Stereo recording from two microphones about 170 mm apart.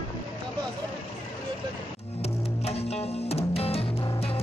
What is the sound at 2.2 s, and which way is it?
Music, 35° left (ahead or behind).